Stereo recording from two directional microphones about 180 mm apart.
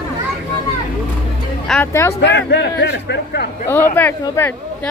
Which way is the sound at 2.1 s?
70° left (ahead or behind).